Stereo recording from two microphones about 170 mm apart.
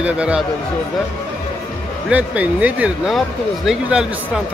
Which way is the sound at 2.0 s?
10° right (ahead or behind).